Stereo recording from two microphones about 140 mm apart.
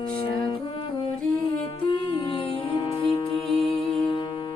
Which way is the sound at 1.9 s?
40° left (ahead or behind).